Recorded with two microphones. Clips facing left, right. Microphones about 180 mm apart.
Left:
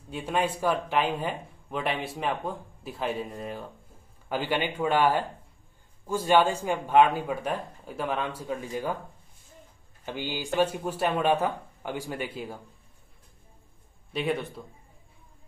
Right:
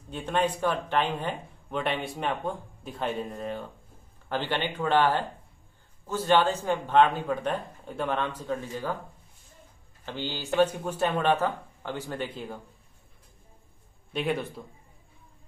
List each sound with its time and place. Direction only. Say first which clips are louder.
0.1 s speech: right 1 dB; 10° left (ahead or behind)
10.0 s speech: left 1 dB; 15° left (ahead or behind)
14.1 s speech: even; centre (ahead or behind)